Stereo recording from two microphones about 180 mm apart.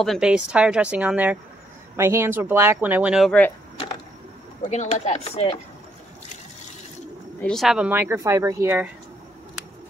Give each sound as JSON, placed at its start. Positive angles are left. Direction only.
{"t": 0.0, "sound": "a woman's voice", "side_deg": 0}
{"t": 4.6, "sound": "chopping", "side_deg": 40}
{"t": 7.4, "sound": "a woman's voice", "side_deg": 0}